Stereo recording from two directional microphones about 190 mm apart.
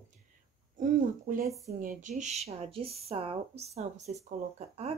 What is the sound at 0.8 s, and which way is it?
Speech, 45° right (ahead or behind).